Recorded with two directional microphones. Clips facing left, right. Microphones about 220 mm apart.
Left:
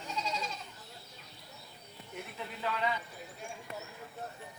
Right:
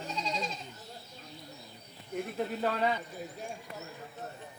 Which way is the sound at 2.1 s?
45° right (ahead or behind).